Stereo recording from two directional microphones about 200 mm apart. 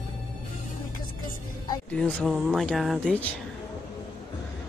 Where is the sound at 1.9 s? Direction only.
5° left (ahead or behind).